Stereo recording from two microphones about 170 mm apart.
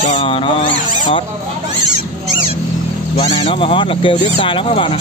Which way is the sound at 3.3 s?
35° left (ahead or behind).